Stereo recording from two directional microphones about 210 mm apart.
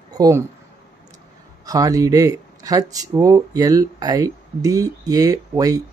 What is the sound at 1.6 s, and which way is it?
Speech, 15° right (ahead or behind).